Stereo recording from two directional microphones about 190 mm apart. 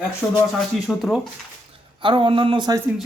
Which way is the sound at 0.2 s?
5° left (ahead or behind).